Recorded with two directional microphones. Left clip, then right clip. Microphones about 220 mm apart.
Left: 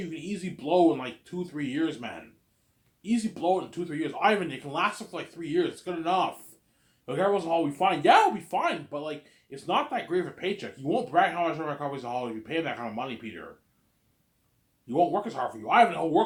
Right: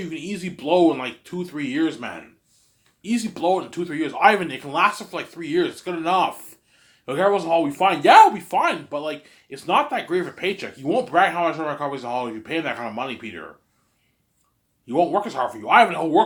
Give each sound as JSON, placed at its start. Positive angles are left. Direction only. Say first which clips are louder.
{"t": 0.0, "sound": "speech", "louder": "right 6 dB", "side_deg": -25}
{"t": 14.8, "sound": "speech", "louder": "right 5 dB", "side_deg": -25}